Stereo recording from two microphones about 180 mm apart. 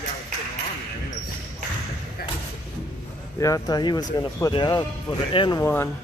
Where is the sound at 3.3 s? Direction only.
20° left (ahead or behind).